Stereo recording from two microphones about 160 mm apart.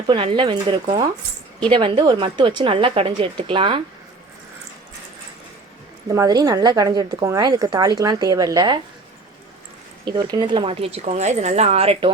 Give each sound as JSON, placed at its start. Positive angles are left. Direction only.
{"t": 0.1, "sound": "a woman's voice", "side_deg": -35}
{"t": 6.1, "sound": "speech", "side_deg": -25}
{"t": 10.1, "sound": "a woman's voice", "side_deg": -25}